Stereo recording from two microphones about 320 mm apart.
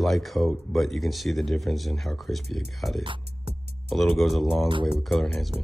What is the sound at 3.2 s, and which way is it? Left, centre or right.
Music, right.